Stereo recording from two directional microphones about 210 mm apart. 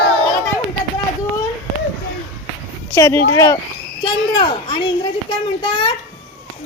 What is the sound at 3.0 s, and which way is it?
A child's voice, 10° left (ahead or behind).